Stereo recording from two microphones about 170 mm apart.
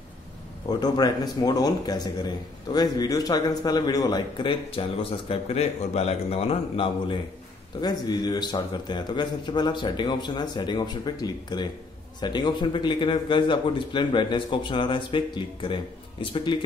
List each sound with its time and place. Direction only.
0.7 s a man's voice: 25° left (ahead or behind)
7.8 s a man's voice: 25° left (ahead or behind)